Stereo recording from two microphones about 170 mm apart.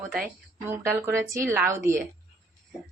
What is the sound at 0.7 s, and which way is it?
A woman's voice, 15° right (ahead or behind).